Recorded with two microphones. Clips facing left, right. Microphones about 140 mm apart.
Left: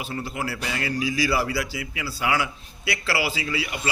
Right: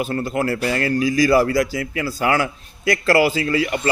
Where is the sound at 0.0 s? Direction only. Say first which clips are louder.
Right 9 dB; 50° right (ahead or behind).